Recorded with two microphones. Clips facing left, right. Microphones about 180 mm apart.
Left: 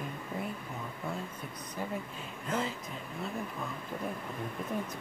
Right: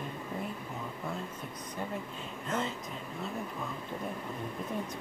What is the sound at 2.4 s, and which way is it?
Speech, centre (ahead or behind).